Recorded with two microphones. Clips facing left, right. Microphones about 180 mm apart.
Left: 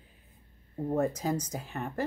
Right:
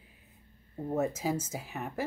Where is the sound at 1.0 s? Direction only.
5° right (ahead or behind).